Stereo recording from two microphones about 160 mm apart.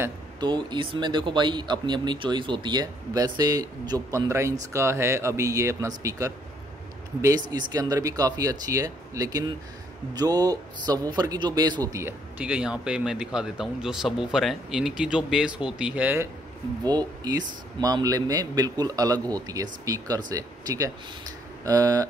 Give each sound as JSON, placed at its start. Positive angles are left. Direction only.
{"t": 0.4, "sound": "speech", "side_deg": -30}
{"t": 16.8, "sound": "speech", "side_deg": -25}